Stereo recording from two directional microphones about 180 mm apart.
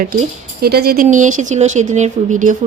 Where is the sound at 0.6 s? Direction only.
60° right (ahead or behind).